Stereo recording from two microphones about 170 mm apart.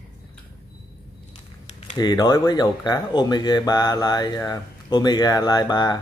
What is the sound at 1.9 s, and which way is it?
Speech, 25° left (ahead or behind).